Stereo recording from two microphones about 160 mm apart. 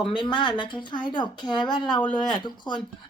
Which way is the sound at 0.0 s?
30° left (ahead or behind).